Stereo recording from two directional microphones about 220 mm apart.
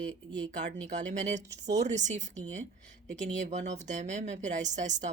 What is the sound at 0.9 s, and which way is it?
Speech, 35° right (ahead or behind).